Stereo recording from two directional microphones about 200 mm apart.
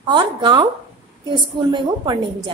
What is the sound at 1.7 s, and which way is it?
Speech, 20° right (ahead or behind).